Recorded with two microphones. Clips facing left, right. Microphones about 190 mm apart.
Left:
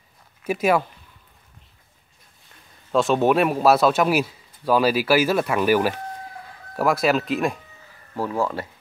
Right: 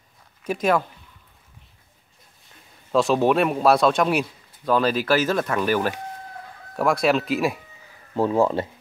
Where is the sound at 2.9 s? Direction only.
Centre (ahead or behind).